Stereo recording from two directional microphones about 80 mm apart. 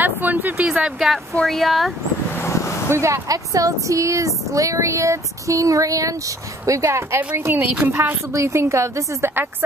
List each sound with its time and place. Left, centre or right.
0.0 s a sound: right
0.7 s speech: centre
2.3 s vehicle: left
2.9 s speech: right
8.3 s speech: right